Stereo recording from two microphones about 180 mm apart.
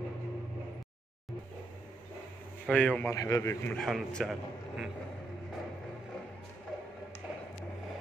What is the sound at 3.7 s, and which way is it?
A man's voice, 5° left (ahead or behind).